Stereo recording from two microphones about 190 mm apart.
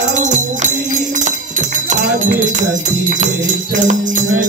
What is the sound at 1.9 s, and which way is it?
Music, 50° right (ahead or behind).